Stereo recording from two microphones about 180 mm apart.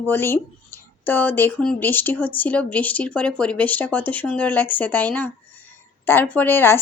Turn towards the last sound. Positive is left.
turn(degrees=10)  # may be behind; listen again after turning